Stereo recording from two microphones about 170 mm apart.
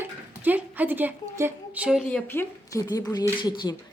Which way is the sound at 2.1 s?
10° left (ahead or behind).